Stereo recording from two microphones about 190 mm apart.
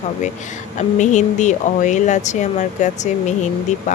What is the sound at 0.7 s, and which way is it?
Speech, 40° left (ahead or behind).